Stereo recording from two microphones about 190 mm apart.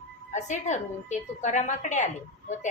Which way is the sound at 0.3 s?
40° left (ahead or behind).